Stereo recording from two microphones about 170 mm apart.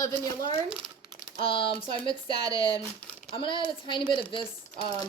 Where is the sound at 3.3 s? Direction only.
30° left (ahead or behind).